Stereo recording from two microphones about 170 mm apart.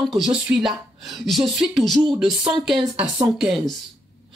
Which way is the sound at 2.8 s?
30° right (ahead or behind).